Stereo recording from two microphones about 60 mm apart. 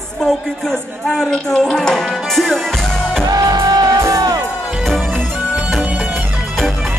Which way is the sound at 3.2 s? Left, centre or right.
Right.